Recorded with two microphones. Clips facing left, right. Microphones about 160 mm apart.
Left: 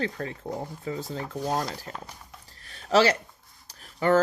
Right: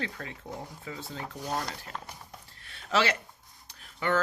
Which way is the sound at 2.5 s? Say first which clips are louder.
Left 7 dB; 35° left (ahead or behind).